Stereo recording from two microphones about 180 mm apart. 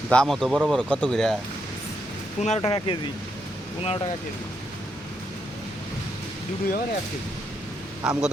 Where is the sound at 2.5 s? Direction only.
30° left (ahead or behind).